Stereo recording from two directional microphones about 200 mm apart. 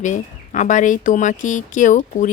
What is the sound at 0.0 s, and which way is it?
Speech, 35° left (ahead or behind).